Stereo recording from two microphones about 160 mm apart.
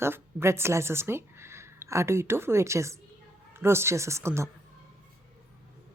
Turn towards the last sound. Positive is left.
turn(degrees=-15)  # may be behind; listen again after turning